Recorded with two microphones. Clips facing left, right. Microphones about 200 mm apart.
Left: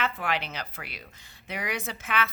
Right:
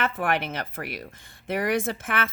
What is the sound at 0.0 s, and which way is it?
Speech, 50° right (ahead or behind).